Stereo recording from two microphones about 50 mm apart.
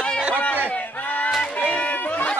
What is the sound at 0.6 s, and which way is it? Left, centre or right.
Battle cry, left.